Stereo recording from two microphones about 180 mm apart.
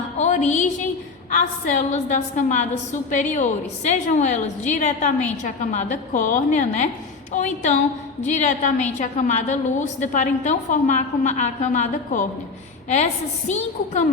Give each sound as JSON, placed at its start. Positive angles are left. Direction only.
{"t": 0.2, "sound": "a woman's voice", "side_deg": 40}